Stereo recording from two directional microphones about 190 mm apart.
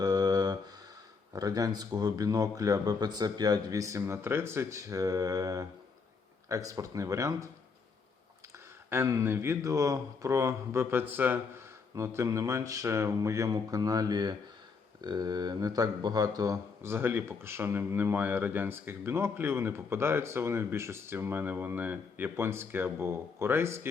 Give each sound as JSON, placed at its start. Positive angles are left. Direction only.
{"t": 0.0, "sound": "a sound", "side_deg": -20}
{"t": 1.3, "sound": "speech", "side_deg": -20}
{"t": 8.9, "sound": "speech", "side_deg": -15}